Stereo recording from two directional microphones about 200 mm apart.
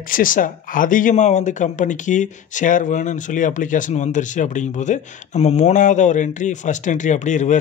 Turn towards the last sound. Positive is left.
turn(degrees=35)  # may be behind; listen again after turning